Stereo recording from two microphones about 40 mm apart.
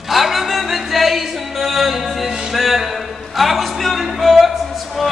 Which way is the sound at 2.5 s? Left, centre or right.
Centre.